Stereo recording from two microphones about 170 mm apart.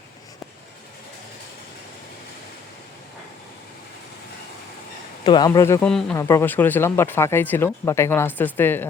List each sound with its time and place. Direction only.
5.2 s speech: 25° left (ahead or behind)
5.8 s speech: 5° left (ahead or behind)
6.1 s speech: 20° left (ahead or behind)